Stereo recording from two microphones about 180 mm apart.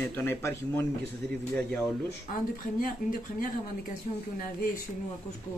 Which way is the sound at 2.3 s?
50° left (ahead or behind).